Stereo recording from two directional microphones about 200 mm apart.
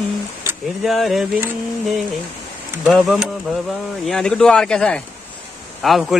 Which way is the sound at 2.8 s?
Centre (ahead or behind).